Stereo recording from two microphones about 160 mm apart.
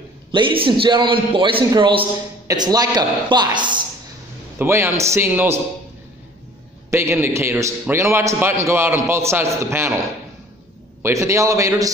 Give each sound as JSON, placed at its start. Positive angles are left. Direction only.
{"t": 0.3, "sound": "a man's voice", "side_deg": -30}
{"t": 4.6, "sound": "a man's voice", "side_deg": -15}
{"t": 6.9, "sound": "a man's voice", "side_deg": -15}
{"t": 11.0, "sound": "a man's voice", "side_deg": -15}